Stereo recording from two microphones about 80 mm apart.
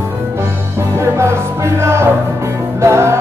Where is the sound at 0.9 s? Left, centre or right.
Right.